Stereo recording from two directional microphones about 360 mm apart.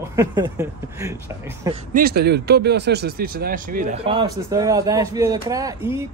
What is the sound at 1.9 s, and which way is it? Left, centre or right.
Speech, right.